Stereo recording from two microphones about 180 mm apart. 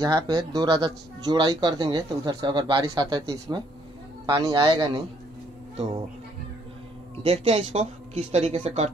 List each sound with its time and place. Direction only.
0.0 s speech: 20° right (ahead or behind)
7.2 s speech: 35° right (ahead or behind)